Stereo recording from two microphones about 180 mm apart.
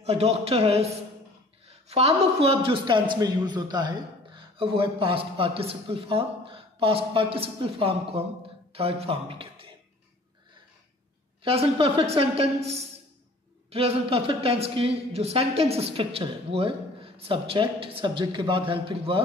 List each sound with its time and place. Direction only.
0.0 s a man's voice: 35° right (ahead or behind)
11.4 s speech: 30° right (ahead or behind)
13.7 s speech: 35° right (ahead or behind)